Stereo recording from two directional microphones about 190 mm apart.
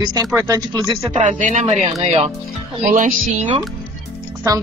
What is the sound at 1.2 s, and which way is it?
Speech, 40° right (ahead or behind).